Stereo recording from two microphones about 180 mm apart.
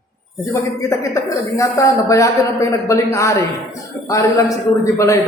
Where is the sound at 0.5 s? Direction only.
15° left (ahead or behind).